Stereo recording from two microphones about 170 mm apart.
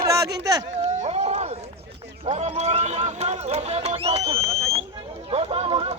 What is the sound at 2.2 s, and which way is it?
Music, 40° right (ahead or behind).